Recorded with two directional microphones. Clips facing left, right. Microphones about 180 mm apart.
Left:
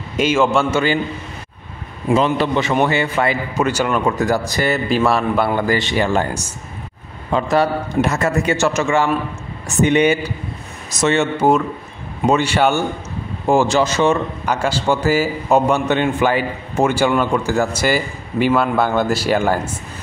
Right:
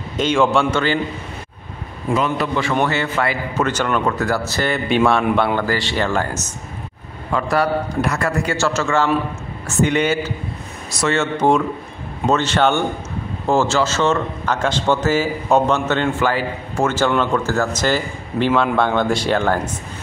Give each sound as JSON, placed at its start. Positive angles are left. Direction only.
{"t": 0.2, "sound": "a man's voice", "side_deg": 5}
{"t": 2.1, "sound": "a man's voice", "side_deg": 30}
{"t": 5.7, "sound": "a man's voice", "side_deg": 15}
{"t": 11.3, "sound": "a man's voice", "side_deg": 5}